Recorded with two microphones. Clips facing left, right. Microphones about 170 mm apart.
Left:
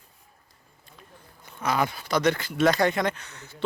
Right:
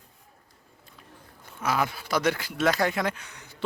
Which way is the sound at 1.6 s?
5° right (ahead or behind).